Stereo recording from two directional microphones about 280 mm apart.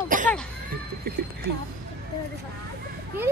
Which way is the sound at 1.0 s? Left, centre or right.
Right.